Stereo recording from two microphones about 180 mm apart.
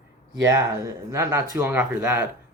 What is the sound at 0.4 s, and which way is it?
Speech, 20° right (ahead or behind).